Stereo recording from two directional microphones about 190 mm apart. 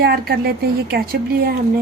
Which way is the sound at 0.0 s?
55° right (ahead or behind).